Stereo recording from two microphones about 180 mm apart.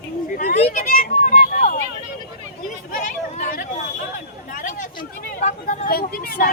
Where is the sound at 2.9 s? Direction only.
50° left (ahead or behind).